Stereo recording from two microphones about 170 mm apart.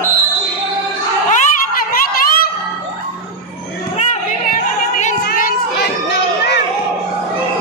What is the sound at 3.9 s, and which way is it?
Music, 45° left (ahead or behind).